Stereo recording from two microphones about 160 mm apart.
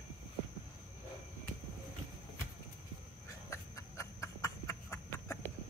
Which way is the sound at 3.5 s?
20° left (ahead or behind).